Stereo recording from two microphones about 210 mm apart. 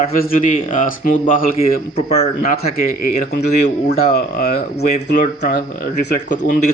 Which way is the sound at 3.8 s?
50° left (ahead or behind).